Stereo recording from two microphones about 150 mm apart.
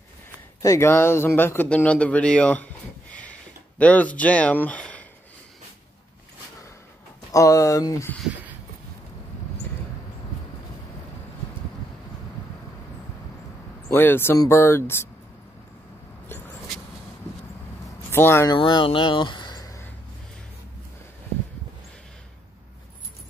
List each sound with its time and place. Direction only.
0.6 s speech: 20° left (ahead or behind)
3.2 s a sound: 10° left (ahead or behind)
7.3 s speech: 20° left (ahead or behind)
13.9 s speech: 15° left (ahead or behind)
17.8 s vehicle: 15° left (ahead or behind)
18.5 s speech: 30° left (ahead or behind)